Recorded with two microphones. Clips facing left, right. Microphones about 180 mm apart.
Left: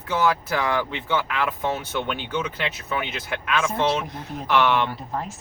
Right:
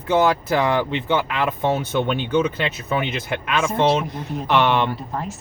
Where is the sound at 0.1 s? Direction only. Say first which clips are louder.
Right 5 dB; 25° right (ahead or behind).